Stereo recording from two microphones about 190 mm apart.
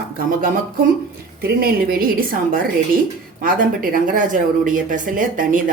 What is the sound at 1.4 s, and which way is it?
A woman's voice, 50° right (ahead or behind).